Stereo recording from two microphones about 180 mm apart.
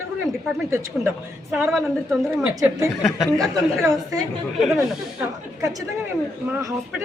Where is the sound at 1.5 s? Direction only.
5° right (ahead or behind).